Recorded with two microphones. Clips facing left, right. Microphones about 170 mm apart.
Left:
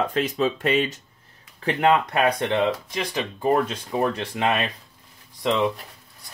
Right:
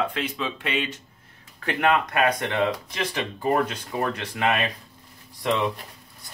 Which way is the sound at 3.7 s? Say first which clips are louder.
Left 3 dB; 25° left (ahead or behind).